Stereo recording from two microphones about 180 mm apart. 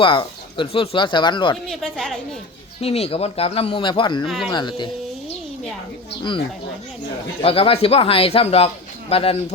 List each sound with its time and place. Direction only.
0.0 s speech: 30° left (ahead or behind)
1.6 s speech: centre (ahead or behind)
2.8 s speech: 35° left (ahead or behind)
7.4 s speech: 30° left (ahead or behind)